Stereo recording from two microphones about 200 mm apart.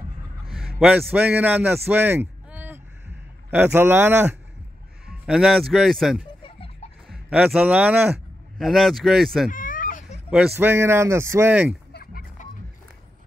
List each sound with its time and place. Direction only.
0.7 s a man's voice: 5° right (ahead or behind)
9.5 s a sound: 40° left (ahead or behind)
10.3 s speech: 5° right (ahead or behind)
11.9 s chicken: 50° left (ahead or behind)